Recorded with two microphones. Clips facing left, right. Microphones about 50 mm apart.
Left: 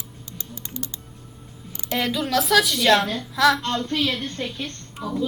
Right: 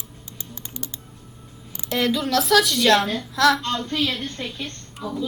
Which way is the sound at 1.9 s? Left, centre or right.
Centre.